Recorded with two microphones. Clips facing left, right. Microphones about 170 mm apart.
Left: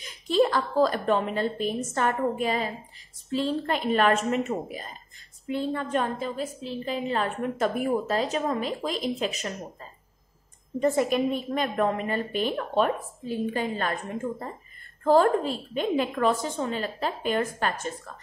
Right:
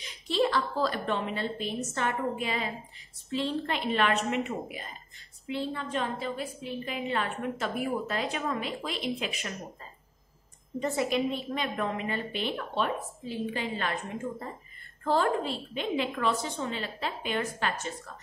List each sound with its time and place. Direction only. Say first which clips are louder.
0.0 s a woman's voice: left 5 dB; 45° left (ahead or behind)
5.5 s a woman's voice: left 5 dB; 50° left (ahead or behind)
10.8 s a woman's voice: left 5 dB; 50° left (ahead or behind)
15.0 s a woman's voice: left 6 dB; 45° left (ahead or behind)